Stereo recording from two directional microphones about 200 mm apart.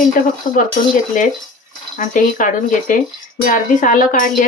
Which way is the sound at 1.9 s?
40° left (ahead or behind).